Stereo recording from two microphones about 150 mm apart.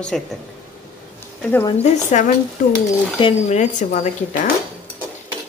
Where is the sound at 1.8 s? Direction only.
55° left (ahead or behind).